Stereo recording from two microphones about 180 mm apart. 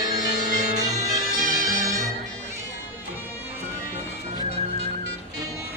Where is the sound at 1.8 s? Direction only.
20° right (ahead or behind).